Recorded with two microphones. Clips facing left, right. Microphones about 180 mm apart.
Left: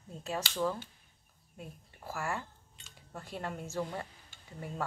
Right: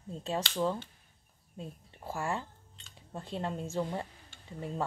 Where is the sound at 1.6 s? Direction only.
30° right (ahead or behind).